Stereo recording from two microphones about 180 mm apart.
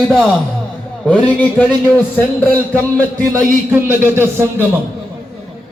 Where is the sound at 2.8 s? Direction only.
10° left (ahead or behind).